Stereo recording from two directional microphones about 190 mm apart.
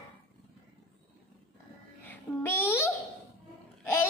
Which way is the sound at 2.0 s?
10° left (ahead or behind).